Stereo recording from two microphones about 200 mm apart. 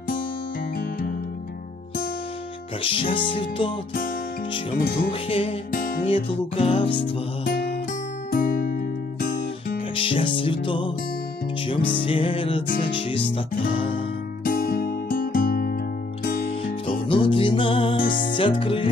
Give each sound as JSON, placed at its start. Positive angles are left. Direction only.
{"t": 2.8, "sound": "music", "side_deg": 25}
{"t": 4.7, "sound": "music", "side_deg": 45}
{"t": 5.3, "sound": "music", "side_deg": 30}
{"t": 5.7, "sound": "music", "side_deg": 45}
{"t": 6.0, "sound": "music", "side_deg": 30}
{"t": 8.3, "sound": "music", "side_deg": 45}
{"t": 9.9, "sound": "music", "side_deg": 25}
{"t": 14.4, "sound": "music", "side_deg": 45}
{"t": 16.4, "sound": "music", "side_deg": 25}